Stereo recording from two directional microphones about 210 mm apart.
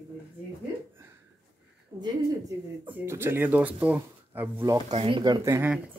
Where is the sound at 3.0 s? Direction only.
10° right (ahead or behind).